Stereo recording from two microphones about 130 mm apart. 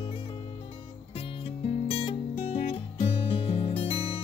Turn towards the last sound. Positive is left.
turn(degrees=45)  # may be behind; listen again after turning